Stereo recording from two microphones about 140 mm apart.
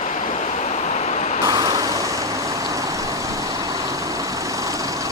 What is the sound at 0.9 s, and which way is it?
Waves, 55° left (ahead or behind).